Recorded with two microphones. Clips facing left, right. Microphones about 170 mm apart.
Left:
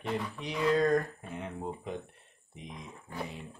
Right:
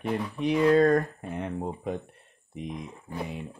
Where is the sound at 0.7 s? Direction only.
55° right (ahead or behind).